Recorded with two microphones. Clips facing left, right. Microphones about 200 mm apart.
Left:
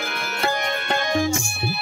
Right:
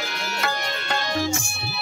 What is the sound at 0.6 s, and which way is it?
Tabla, 55° left (ahead or behind).